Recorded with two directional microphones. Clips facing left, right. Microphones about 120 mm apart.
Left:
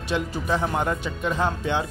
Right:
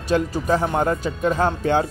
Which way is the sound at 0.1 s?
35° right (ahead or behind).